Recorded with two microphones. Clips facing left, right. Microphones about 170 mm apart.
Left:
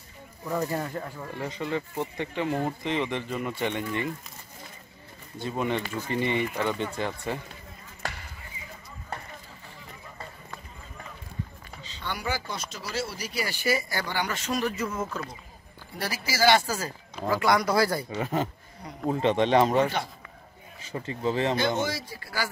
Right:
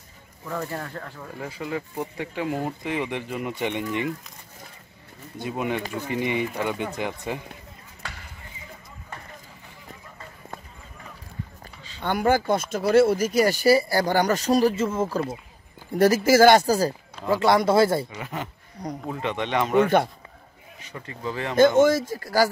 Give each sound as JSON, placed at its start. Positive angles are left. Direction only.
{"t": 0.5, "sound": "speech", "side_deg": 15}
{"t": 1.4, "sound": "speech", "side_deg": -5}
{"t": 5.4, "sound": "speech", "side_deg": -10}
{"t": 12.0, "sound": "speech", "side_deg": -50}
{"t": 15.9, "sound": "speech", "side_deg": -45}
{"t": 17.3, "sound": "speech", "side_deg": -25}
{"t": 18.1, "sound": "speech", "side_deg": 30}
{"t": 20.9, "sound": "speech", "side_deg": 30}
{"t": 21.5, "sound": "speech", "side_deg": -50}